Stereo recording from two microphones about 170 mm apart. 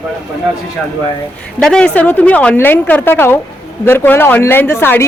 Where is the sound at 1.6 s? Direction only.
5° left (ahead or behind).